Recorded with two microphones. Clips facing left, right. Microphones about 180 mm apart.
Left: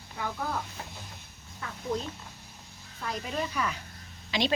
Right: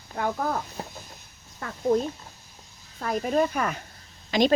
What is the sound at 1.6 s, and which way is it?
Speech, 50° right (ahead or behind).